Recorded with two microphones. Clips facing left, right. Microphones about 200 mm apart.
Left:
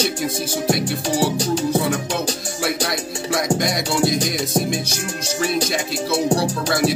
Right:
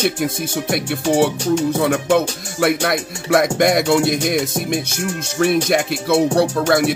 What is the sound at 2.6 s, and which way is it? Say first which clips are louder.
Speech: right 6 dB; 65° right (ahead or behind).